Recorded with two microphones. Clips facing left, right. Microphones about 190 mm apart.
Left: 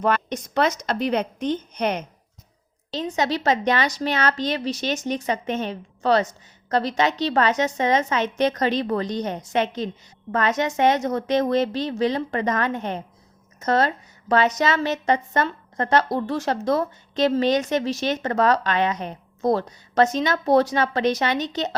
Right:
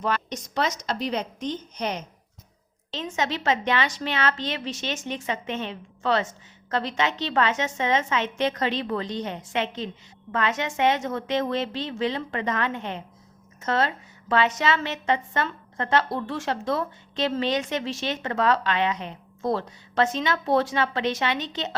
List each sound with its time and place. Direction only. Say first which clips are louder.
0.0 s a woman's voice: left 5 dB; 55° left (ahead or behind)
2.9 s a woman's voice: left 4 dB; 35° left (ahead or behind)